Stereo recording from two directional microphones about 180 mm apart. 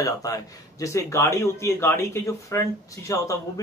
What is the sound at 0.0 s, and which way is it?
Speech, 20° left (ahead or behind).